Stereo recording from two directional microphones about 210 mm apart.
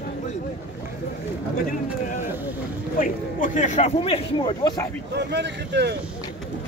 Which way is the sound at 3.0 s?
35° left (ahead or behind).